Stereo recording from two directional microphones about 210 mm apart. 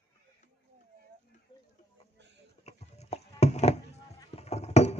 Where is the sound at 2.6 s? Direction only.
30° left (ahead or behind).